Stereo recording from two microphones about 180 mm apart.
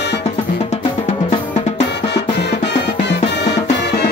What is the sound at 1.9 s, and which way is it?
Music, 70° left (ahead or behind).